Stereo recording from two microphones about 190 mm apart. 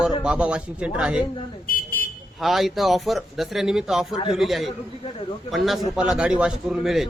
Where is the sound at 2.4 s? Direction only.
Centre (ahead or behind).